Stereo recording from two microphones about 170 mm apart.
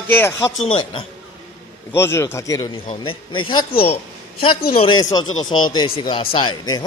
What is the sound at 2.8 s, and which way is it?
Speech, 35° left (ahead or behind).